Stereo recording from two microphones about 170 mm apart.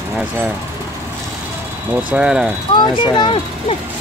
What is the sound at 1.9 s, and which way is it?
Speech, 5° right (ahead or behind).